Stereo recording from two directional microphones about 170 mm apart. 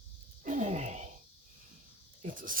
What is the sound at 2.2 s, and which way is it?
Speech, 55° right (ahead or behind).